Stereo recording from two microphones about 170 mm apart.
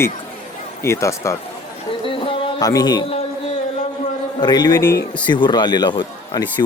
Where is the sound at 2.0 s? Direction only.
30° left (ahead or behind).